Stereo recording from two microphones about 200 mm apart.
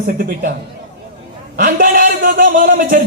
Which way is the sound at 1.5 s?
45° right (ahead or behind).